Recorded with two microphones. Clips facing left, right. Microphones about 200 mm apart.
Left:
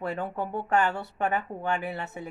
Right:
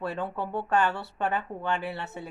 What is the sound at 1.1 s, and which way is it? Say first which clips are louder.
Speech: left 1 dB; 10° left (ahead or behind).